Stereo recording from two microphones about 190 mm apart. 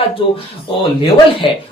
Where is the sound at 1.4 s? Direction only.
25° left (ahead or behind).